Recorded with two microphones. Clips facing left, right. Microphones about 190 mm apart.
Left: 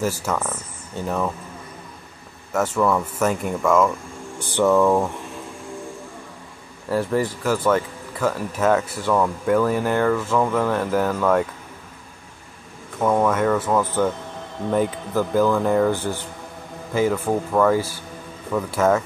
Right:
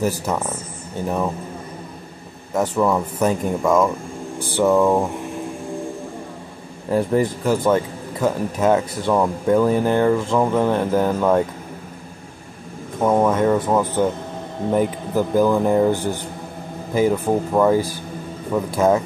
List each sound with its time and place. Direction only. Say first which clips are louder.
0.0 s a man's voice: right 2 dB; 15° right (ahead or behind)
2.5 s a man's voice: right 1 dB; 15° right (ahead or behind)
4.4 s a sound: right 1 dB; 10° right (ahead or behind)
6.9 s speech: right 3 dB; 20° right (ahead or behind)
13.0 s a man's voice: right 2 dB; 20° right (ahead or behind)